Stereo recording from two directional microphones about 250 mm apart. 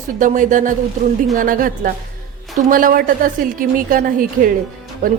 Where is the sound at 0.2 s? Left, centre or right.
Right.